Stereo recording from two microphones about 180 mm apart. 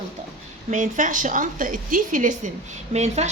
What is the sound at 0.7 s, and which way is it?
A woman's voice, 45° right (ahead or behind).